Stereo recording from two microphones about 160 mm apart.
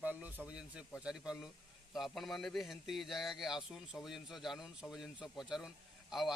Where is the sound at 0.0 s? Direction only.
10° right (ahead or behind).